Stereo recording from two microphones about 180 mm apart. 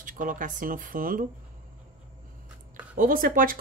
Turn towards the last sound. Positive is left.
turn(degrees=-50)  # may be behind; listen again after turning